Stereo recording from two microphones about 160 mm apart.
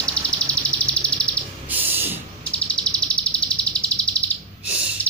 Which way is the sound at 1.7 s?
10° right (ahead or behind).